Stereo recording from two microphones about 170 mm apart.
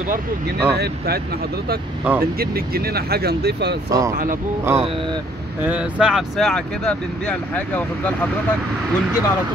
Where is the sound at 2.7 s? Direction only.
65° right (ahead or behind).